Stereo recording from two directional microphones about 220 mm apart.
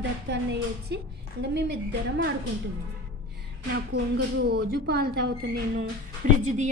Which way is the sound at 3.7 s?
50° right (ahead or behind).